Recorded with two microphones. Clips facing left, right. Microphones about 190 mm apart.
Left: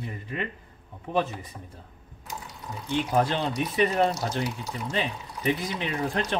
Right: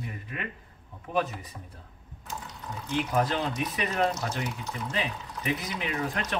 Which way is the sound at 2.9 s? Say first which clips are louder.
Left 2 dB; 30° left (ahead or behind).